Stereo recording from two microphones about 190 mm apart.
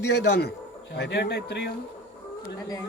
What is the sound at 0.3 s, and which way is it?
Speech, 60° left (ahead or behind).